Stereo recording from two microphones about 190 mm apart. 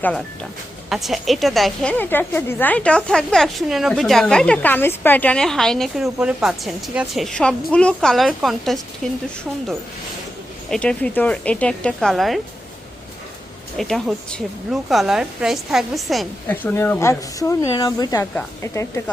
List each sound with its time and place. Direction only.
0.9 s a woman's voice: centre (ahead or behind)
10.7 s a woman's voice: 5° left (ahead or behind)
13.7 s a woman's voice: centre (ahead or behind)